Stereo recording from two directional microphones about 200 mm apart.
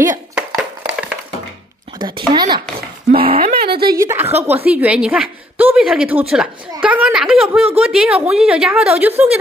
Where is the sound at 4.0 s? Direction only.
15° right (ahead or behind).